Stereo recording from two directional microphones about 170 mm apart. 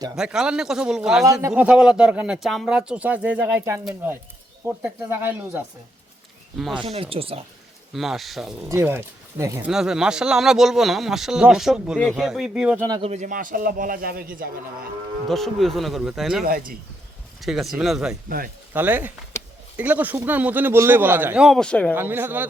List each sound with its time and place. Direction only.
0.2 s speech: 5° right (ahead or behind)
1.2 s speech: 15° right (ahead or behind)
6.6 s speech: centre (ahead or behind)
6.9 s speech: 35° right (ahead or behind)
7.9 s speech: centre (ahead or behind)
8.7 s speech: 15° right (ahead or behind)
9.6 s speech: 5° right (ahead or behind)
13.0 s a man's voice: 40° right (ahead or behind); by 14.8 s 60° right (ahead or behind)
15.3 s speech: centre (ahead or behind)
16.4 s speech: 60° right (ahead or behind)
17.4 s speech: centre (ahead or behind)
18.3 s speech: 55° right (ahead or behind)
18.7 s speech: 10° right (ahead or behind); by 21.9 s 5° left (ahead or behind)
21.9 s speech: 10° right (ahead or behind)